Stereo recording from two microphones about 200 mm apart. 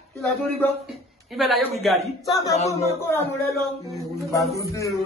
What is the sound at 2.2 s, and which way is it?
Speech, 15° left (ahead or behind).